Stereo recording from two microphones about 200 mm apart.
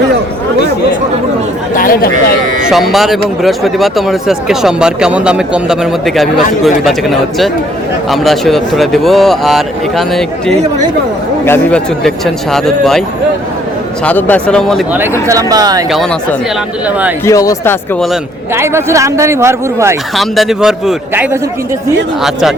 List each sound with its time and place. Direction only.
1.7 s speech: 45° left (ahead or behind)
2.6 s speech: centre (ahead or behind)
14.0 s speech: 10° left (ahead or behind)
15.3 s speech: 20° right (ahead or behind)
17.2 s speech: 15° left (ahead or behind)
18.5 s speech: 15° right (ahead or behind)
20.1 s speech: centre (ahead or behind)